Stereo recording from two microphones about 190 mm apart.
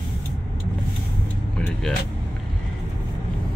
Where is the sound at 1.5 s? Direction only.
5° left (ahead or behind).